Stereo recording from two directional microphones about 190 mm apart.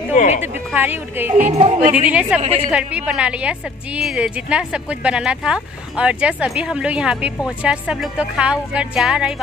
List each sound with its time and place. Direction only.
0.1 s a sound: 40° left (ahead or behind)
0.7 s a woman's voice: 10° right (ahead or behind)
1.4 s speech: 35° right (ahead or behind)
2.0 s a woman's voice: 5° right (ahead or behind)